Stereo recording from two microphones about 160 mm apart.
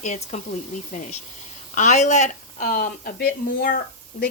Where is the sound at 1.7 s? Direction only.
45° left (ahead or behind); by 3.8 s 70° left (ahead or behind).